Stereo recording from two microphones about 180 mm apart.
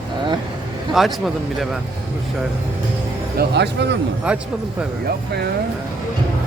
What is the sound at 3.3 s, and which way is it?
Speech, 70° right (ahead or behind).